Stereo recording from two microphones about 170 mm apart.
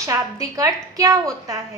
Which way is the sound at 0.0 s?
20° right (ahead or behind).